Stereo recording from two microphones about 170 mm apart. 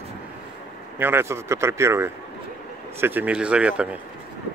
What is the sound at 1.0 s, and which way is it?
A man's voice, 15° right (ahead or behind).